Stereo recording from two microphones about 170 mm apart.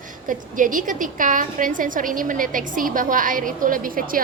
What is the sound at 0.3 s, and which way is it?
A woman's voice, 50° right (ahead or behind).